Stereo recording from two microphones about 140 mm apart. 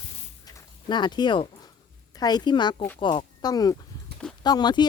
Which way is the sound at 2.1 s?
30° left (ahead or behind).